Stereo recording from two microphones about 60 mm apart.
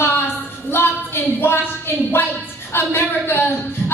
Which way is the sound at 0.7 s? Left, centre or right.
Left.